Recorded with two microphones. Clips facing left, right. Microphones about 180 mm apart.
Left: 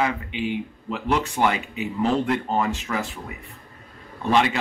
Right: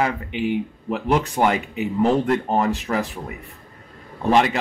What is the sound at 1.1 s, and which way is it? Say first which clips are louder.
Speech: right 3 dB; 40° right (ahead or behind).